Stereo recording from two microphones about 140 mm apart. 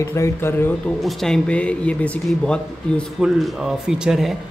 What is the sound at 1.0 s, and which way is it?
A man's voice, 5° left (ahead or behind).